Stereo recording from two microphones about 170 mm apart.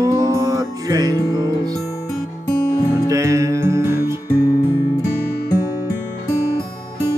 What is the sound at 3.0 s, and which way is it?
Music, 20° right (ahead or behind).